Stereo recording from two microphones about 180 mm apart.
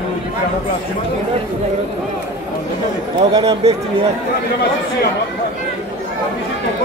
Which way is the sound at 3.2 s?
20° right (ahead or behind).